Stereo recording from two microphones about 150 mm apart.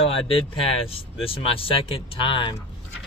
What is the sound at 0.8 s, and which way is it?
Speech, 40° left (ahead or behind).